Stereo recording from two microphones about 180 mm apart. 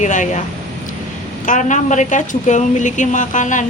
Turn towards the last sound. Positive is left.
turn(degrees=45)  # may be behind; listen again after turning